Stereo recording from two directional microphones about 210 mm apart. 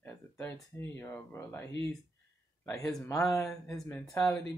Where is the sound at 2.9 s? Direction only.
15° left (ahead or behind).